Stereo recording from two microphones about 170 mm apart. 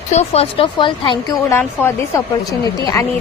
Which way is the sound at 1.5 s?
15° left (ahead or behind).